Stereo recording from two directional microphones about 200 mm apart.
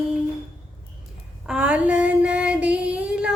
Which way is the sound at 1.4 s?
5° right (ahead or behind).